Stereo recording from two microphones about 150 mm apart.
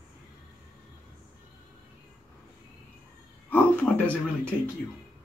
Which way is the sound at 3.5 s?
10° left (ahead or behind).